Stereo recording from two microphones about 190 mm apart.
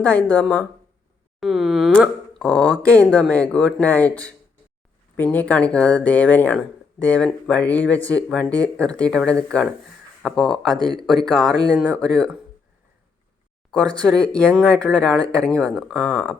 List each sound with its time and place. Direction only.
0.0 s speech: 5° left (ahead or behind)
1.4 s a sound: centre (ahead or behind)
2.8 s speech: 5° left (ahead or behind)
13.7 s speech: 5° left (ahead or behind)